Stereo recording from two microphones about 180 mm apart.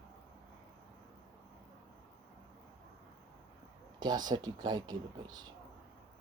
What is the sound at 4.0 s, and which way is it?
Speech, 25° right (ahead or behind).